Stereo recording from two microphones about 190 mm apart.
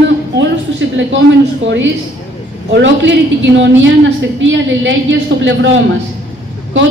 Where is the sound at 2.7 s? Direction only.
70° right (ahead or behind).